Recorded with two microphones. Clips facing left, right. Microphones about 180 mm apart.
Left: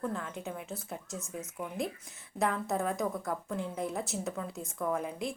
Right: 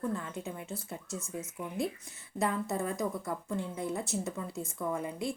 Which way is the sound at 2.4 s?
Centre (ahead or behind).